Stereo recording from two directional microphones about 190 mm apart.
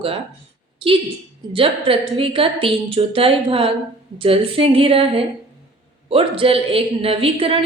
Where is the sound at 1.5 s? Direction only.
30° right (ahead or behind).